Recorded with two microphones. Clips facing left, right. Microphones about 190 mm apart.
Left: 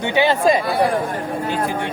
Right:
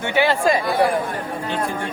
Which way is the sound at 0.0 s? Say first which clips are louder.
Left 2 dB; 20° left (ahead or behind).